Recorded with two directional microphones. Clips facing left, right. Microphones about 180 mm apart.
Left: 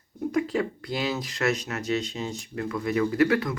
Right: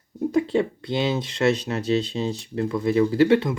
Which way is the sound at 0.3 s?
30° right (ahead or behind).